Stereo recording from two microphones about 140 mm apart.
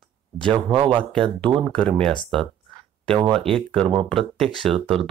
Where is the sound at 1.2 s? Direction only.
35° right (ahead or behind).